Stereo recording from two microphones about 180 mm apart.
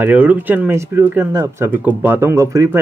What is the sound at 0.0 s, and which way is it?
Speech, 10° right (ahead or behind).